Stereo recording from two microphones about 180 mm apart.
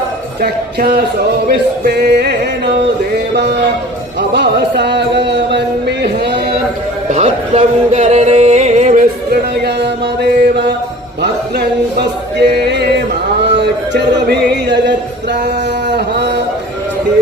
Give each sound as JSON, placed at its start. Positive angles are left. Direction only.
{"t": 0.4, "sound": "speech", "side_deg": -55}
{"t": 1.5, "sound": "music", "side_deg": -65}
{"t": 7.1, "sound": "music", "side_deg": -40}
{"t": 9.8, "sound": "mantra", "side_deg": -65}
{"t": 12.0, "sound": "male singing", "side_deg": -65}
{"t": 14.2, "sound": "music", "side_deg": -70}